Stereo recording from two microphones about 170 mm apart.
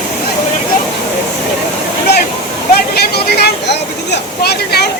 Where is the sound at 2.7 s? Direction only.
70° left (ahead or behind).